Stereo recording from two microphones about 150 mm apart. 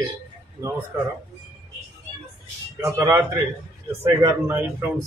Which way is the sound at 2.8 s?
20° right (ahead or behind).